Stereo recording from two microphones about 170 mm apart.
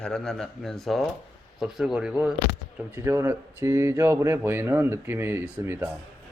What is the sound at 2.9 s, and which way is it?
Speech, 15° right (ahead or behind).